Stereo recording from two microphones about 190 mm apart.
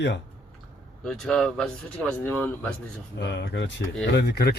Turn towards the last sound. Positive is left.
turn(degrees=60)  # may be behind; listen again after turning